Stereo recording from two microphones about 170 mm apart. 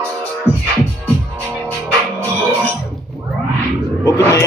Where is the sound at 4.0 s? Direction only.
20° left (ahead or behind).